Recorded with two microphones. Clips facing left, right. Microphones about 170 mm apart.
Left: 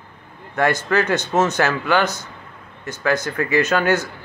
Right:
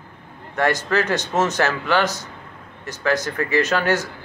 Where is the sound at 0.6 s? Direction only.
Centre (ahead or behind).